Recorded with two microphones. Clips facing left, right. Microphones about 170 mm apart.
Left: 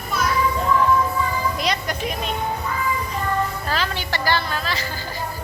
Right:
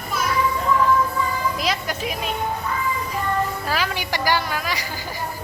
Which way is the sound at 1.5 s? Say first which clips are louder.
Left 1 dB; 5° right (ahead or behind).